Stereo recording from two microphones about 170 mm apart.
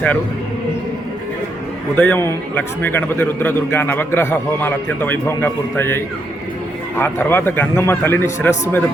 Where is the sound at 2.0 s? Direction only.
10° left (ahead or behind).